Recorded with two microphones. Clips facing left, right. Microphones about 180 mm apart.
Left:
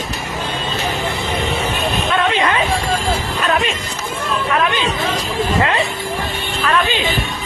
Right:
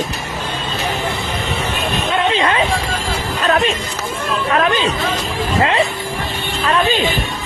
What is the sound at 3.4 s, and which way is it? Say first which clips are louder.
Music: right 4 dB; 40° right (ahead or behind).